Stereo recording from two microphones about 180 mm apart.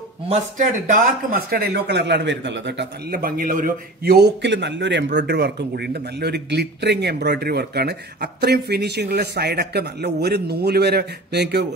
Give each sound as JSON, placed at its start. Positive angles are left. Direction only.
{"t": 0.3, "sound": "speech", "side_deg": -45}